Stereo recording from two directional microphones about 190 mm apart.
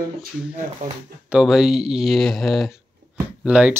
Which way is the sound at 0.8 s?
40° right (ahead or behind).